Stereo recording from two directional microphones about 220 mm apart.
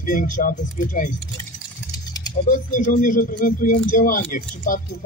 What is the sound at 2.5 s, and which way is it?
Speech, 35° left (ahead or behind).